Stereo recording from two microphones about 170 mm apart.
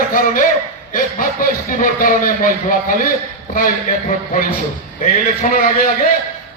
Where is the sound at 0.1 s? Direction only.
55° left (ahead or behind).